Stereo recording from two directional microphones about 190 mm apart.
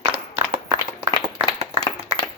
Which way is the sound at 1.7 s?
20° left (ahead or behind).